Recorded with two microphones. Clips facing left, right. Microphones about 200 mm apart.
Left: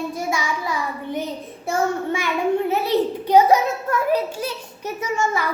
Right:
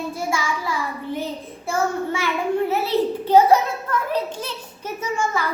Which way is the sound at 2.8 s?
15° left (ahead or behind).